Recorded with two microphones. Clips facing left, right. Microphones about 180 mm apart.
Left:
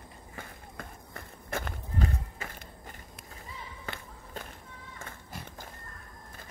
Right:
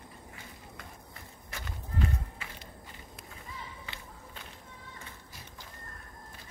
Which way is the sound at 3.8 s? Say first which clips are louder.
Left 4 dB; 45° left (ahead or behind).